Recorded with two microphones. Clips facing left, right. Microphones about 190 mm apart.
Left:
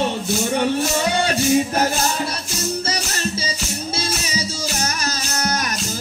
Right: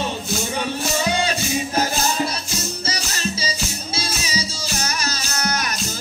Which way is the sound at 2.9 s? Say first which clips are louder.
Left 2 dB; 55° left (ahead or behind).